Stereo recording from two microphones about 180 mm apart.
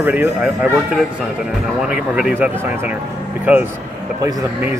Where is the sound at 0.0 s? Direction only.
10° right (ahead or behind).